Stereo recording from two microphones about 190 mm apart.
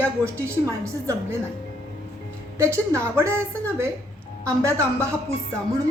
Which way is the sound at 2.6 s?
15° right (ahead or behind).